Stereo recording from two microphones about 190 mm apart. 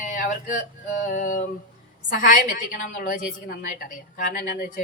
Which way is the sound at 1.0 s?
45° left (ahead or behind).